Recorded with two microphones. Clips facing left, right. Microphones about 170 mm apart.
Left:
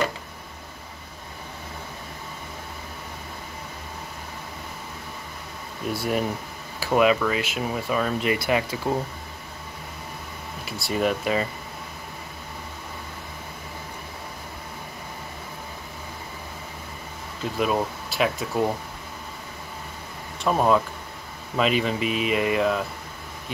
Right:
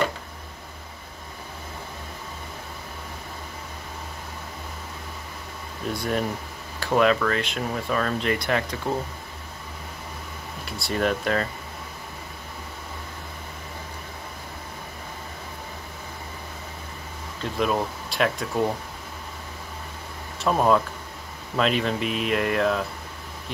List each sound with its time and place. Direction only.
5.9 s speech: 10° left (ahead or behind)
10.6 s speech: centre (ahead or behind)
17.4 s speech: 5° left (ahead or behind)
20.3 s speech: 5° left (ahead or behind)